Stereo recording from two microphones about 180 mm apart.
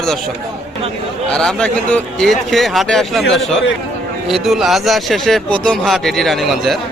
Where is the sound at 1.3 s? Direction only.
5° left (ahead or behind).